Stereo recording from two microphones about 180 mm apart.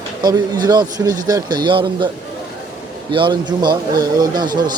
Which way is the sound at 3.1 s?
25° right (ahead or behind).